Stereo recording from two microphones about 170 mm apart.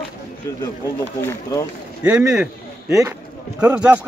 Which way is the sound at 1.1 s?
15° left (ahead or behind).